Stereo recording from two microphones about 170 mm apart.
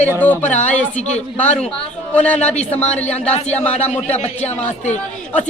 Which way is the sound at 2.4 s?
40° left (ahead or behind).